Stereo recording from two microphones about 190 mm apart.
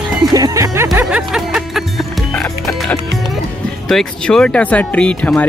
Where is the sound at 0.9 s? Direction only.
5° right (ahead or behind).